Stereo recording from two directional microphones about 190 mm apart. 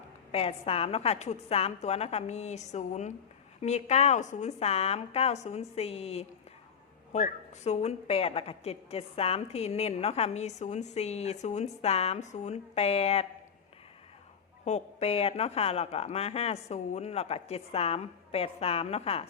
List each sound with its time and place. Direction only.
0.3 s a woman's voice: 30° left (ahead or behind)
14.6 s a woman's voice: 35° left (ahead or behind)